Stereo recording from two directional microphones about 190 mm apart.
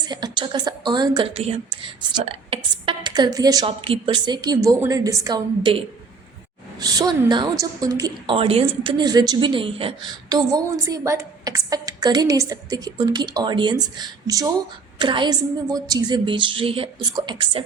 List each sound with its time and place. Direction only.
0.0 s speech: 20° right (ahead or behind)